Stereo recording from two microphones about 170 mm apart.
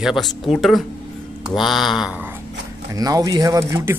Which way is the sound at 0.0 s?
Centre (ahead or behind).